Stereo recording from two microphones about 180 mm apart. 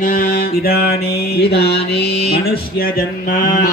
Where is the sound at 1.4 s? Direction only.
65° left (ahead or behind).